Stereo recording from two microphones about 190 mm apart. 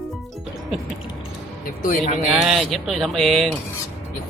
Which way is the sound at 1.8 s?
40° left (ahead or behind).